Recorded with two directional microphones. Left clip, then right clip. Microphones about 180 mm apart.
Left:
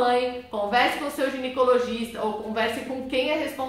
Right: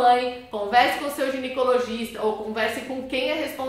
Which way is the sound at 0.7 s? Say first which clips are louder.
Right 3 dB; centre (ahead or behind).